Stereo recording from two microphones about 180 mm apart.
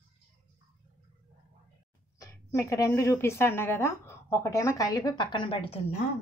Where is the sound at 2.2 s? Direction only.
15° left (ahead or behind).